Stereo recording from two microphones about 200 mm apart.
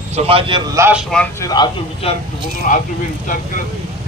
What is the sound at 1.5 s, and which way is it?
Speech, 20° left (ahead or behind).